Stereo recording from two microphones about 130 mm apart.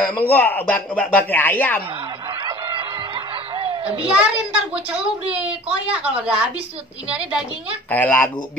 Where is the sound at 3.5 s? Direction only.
45° right (ahead or behind).